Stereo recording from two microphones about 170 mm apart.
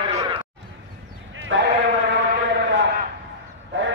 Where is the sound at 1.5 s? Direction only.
90° right.